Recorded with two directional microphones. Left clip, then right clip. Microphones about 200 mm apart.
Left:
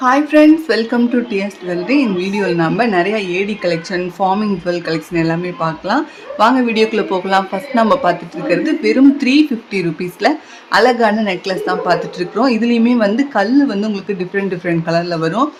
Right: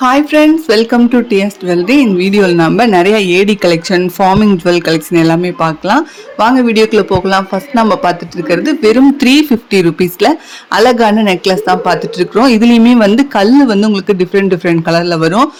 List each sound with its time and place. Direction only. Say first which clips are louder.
0.0 s speech: right 2 dB; 35° right (ahead or behind)